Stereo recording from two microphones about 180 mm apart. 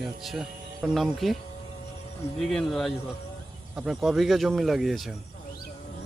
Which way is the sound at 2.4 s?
Centre (ahead or behind).